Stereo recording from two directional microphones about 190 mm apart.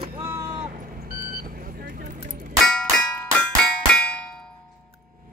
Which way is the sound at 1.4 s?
50° right (ahead or behind).